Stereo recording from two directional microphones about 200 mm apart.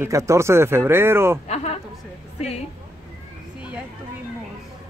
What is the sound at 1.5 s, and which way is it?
Speech, 35° left (ahead or behind).